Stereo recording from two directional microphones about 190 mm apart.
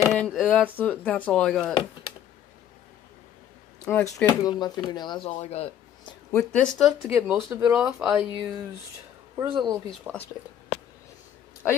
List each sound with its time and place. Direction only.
0.1 s speech: centre (ahead or behind)
3.8 s speech: 10° left (ahead or behind)
5.3 s speech: 35° left (ahead or behind)
6.3 s speech: 5° left (ahead or behind)
7.2 s speech: 15° right (ahead or behind)
7.7 s speech: 5° right (ahead or behind)
9.4 s speech: 25° right (ahead or behind)
10.1 s speech: 10° right (ahead or behind)